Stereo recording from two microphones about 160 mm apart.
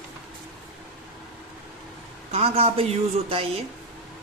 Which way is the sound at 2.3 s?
40° right (ahead or behind).